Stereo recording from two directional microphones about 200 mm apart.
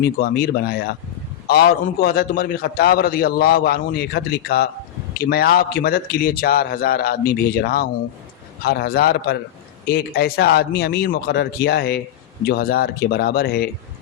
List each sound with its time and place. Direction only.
0.0 s a man's voice: 50° left (ahead or behind)